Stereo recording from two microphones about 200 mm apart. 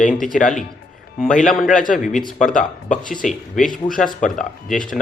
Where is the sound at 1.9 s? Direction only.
40° left (ahead or behind).